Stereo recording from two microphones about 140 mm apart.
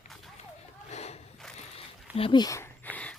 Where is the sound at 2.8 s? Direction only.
10° left (ahead or behind).